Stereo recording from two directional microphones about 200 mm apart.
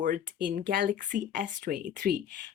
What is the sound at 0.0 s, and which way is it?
Speech, 40° right (ahead or behind).